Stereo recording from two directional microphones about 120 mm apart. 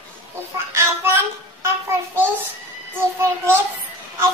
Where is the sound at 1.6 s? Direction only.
20° right (ahead or behind).